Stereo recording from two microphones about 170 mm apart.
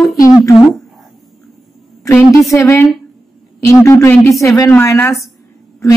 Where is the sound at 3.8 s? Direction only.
15° left (ahead or behind).